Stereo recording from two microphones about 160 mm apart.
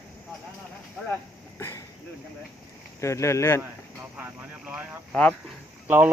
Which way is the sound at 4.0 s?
10° right (ahead or behind).